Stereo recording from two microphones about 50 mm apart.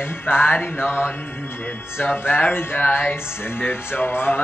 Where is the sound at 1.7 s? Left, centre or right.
Left.